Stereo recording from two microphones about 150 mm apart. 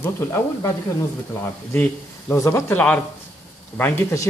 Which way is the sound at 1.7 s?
10° left (ahead or behind).